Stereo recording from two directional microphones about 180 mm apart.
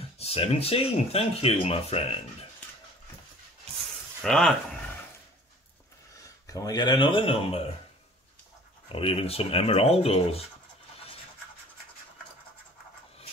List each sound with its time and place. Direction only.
0.2 s speech: 35° left (ahead or behind)
4.2 s a sound: centre (ahead or behind)
6.2 s speech: 20° left (ahead or behind)
8.8 s speech: 30° left (ahead or behind)